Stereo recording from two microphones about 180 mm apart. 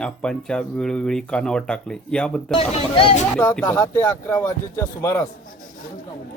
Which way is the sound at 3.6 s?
20° left (ahead or behind).